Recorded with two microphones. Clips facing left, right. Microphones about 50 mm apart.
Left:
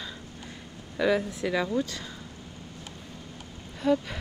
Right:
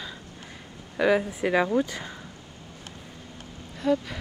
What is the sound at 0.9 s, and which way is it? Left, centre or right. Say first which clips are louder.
Speech: right 3 dB; centre.